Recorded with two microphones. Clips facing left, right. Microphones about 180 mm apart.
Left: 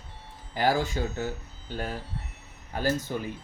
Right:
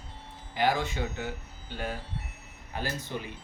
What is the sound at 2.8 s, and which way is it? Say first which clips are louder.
Speech: left 7 dB; 45° left (ahead or behind).